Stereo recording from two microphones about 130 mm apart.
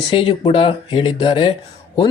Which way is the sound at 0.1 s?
40° left (ahead or behind).